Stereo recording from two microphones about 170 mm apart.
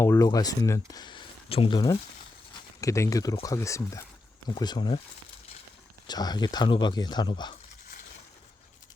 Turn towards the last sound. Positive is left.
turn(degrees=50)  # may be behind; listen again after turning